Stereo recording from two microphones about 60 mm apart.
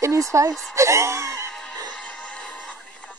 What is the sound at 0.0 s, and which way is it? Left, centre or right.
A woman's voice, right.